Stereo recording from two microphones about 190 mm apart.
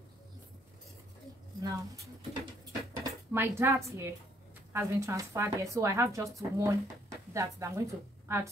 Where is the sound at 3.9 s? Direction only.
15° right (ahead or behind).